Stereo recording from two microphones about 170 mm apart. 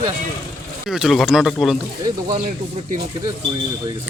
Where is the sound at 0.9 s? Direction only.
Centre (ahead or behind).